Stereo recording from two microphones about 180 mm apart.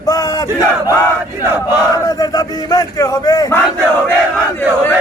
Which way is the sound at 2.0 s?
20° left (ahead or behind).